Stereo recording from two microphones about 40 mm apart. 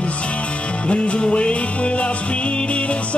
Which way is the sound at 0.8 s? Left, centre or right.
Left.